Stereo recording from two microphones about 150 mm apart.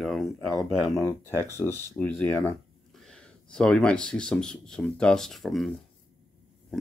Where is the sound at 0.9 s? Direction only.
20° left (ahead or behind).